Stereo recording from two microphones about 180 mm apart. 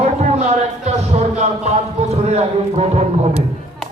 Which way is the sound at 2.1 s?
35° right (ahead or behind).